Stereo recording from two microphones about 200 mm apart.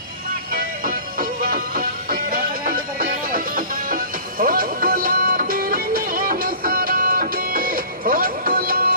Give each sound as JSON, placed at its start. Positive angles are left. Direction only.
{"t": 0.5, "sound": "music", "side_deg": -45}